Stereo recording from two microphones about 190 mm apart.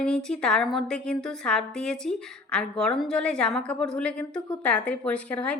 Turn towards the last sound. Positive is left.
turn(degrees=5)  # may be behind; listen again after turning